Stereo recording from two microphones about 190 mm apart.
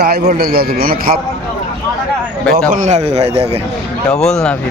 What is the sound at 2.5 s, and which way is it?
A man's voice, 45° right (ahead or behind).